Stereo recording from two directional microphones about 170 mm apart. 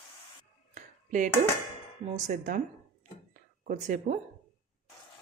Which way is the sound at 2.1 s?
45° right (ahead or behind).